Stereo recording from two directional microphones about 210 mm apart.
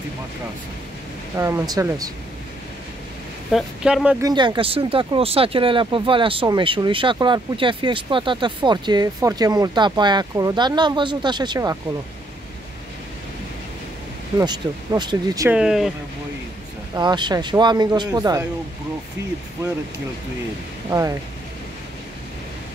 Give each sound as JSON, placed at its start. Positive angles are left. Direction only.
{"t": 1.4, "sound": "speech", "side_deg": -15}
{"t": 3.5, "sound": "speech", "side_deg": -5}
{"t": 4.2, "sound": "speech", "side_deg": -20}
{"t": 14.4, "sound": "speech", "side_deg": -20}
{"t": 15.5, "sound": "speech", "side_deg": -5}
{"t": 16.9, "sound": "speech", "side_deg": -20}
{"t": 20.9, "sound": "speech", "side_deg": -20}